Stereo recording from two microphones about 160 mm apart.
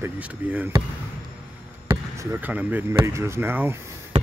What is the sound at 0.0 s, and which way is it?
Speech, 10° right (ahead or behind).